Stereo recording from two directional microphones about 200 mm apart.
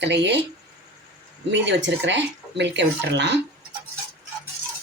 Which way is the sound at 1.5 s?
65° right (ahead or behind).